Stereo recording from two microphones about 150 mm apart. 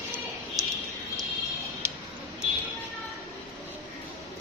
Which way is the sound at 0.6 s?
20° right (ahead or behind).